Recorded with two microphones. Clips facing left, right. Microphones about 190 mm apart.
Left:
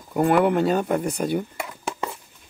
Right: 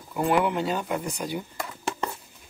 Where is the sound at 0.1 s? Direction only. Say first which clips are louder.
Left 5 dB; 55° left (ahead or behind).